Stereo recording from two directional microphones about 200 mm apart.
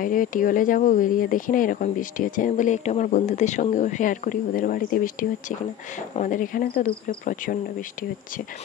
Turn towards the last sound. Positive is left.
turn(degrees=45)  # may be behind; listen again after turning